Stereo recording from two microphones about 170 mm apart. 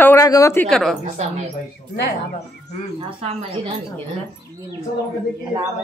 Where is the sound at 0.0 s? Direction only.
15° left (ahead or behind).